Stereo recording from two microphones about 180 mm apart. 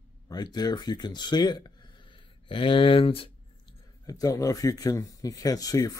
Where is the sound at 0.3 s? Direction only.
20° left (ahead or behind).